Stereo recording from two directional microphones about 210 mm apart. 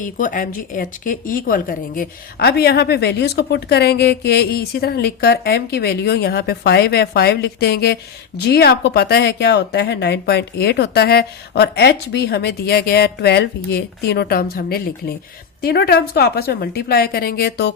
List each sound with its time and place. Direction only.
0.0 s speech: 40° left (ahead or behind)